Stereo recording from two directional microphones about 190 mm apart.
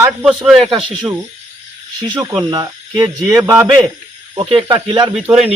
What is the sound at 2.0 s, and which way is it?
A man's voice, 20° right (ahead or behind).